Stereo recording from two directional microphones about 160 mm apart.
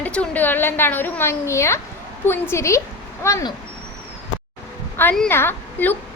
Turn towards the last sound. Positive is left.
turn(degrees=15)  # may be behind; listen again after turning